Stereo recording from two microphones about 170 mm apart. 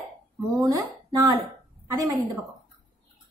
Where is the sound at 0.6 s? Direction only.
20° right (ahead or behind).